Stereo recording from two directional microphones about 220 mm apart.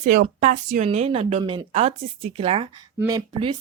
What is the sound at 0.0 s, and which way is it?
A woman's voice, 35° right (ahead or behind).